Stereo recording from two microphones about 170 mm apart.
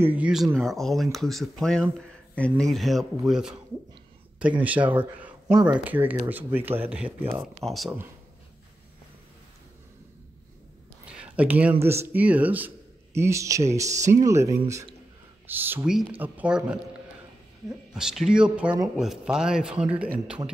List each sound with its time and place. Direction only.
0.0 s speech: 10° right (ahead or behind)
7.6 s speech: centre (ahead or behind)
11.1 s a sound: 5° right (ahead or behind)
11.8 s speech: 15° right (ahead or behind)